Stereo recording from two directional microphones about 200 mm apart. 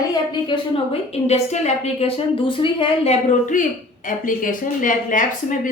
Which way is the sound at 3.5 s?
40° left (ahead or behind).